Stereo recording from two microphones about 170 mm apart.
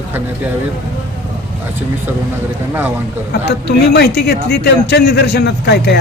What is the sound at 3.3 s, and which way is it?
Speech, 75° left (ahead or behind).